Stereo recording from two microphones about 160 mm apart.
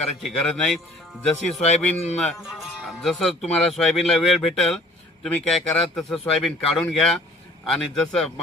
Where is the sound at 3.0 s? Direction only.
Centre (ahead or behind).